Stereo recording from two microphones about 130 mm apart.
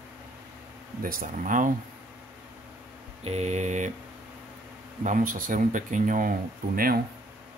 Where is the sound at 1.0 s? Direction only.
90° right.